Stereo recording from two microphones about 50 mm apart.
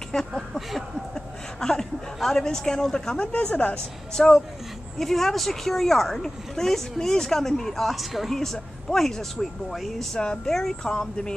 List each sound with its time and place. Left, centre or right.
0.3 s a sound: centre
1.6 s chuckle: centre
2.1 s speech: centre
3.2 s a woman's voice: left
4.1 s speech: centre
10.1 s speech: centre